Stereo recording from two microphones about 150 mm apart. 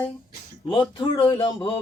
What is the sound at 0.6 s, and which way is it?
Speech, 35° left (ahead or behind).